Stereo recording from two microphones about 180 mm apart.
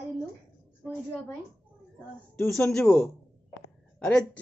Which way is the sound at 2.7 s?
5° left (ahead or behind).